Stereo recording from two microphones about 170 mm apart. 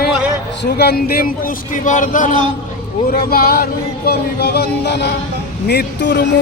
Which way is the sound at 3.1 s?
65° left (ahead or behind).